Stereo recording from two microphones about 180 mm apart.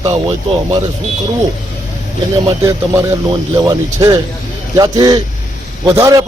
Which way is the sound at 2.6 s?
20° right (ahead or behind).